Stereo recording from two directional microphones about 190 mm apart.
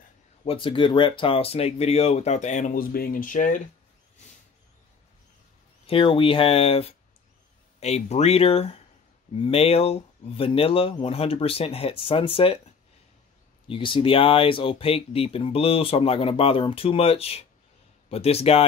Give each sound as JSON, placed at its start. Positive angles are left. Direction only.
{"t": 0.5, "sound": "speech", "side_deg": 30}
{"t": 5.9, "sound": "speech", "side_deg": 30}
{"t": 13.7, "sound": "speech", "side_deg": 25}